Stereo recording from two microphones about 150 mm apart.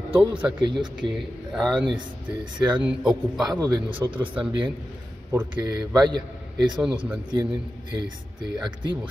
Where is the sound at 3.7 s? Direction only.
35° right (ahead or behind).